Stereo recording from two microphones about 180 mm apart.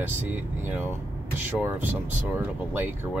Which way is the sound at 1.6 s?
10° right (ahead or behind).